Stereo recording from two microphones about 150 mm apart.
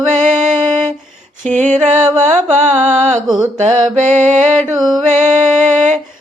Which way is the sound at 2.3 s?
50° right (ahead or behind).